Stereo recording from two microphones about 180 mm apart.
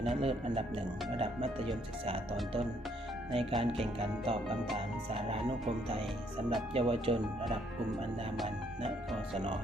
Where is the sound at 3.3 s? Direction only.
30° right (ahead or behind).